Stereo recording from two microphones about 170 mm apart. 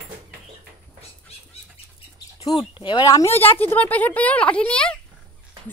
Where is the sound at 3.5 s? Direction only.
10° left (ahead or behind).